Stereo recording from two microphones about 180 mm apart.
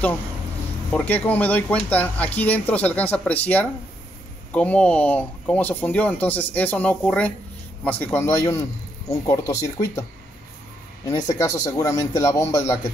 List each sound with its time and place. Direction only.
0.9 s speech: 10° left (ahead or behind)
11.3 s speech: 20° left (ahead or behind)